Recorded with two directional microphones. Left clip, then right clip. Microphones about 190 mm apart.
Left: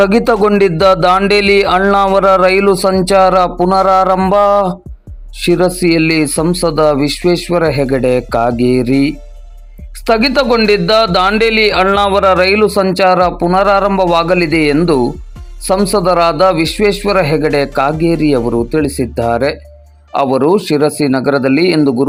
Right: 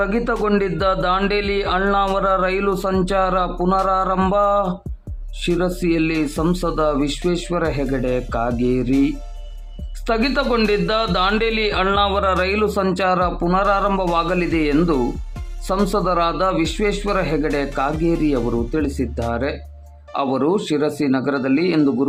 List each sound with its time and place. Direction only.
0.0 s a sound: 30° left (ahead or behind)
2.9 s a man's voice: 25° left (ahead or behind)
10.1 s a man's voice: 30° left (ahead or behind)
18.3 s a man's voice: 20° left (ahead or behind)
19.3 s a sound: 30° left (ahead or behind)
20.1 s a man's voice: 30° left (ahead or behind)